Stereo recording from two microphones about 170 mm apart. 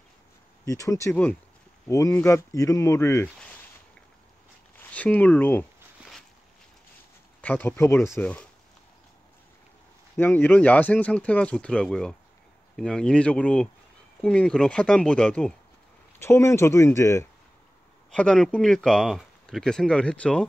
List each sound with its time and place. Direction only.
0.7 s speech: 20° left (ahead or behind)
4.7 s speech: 10° left (ahead or behind)
7.4 s speech: 10° left (ahead or behind)
10.1 s speech: 10° left (ahead or behind)
18.1 s speech: 5° left (ahead or behind)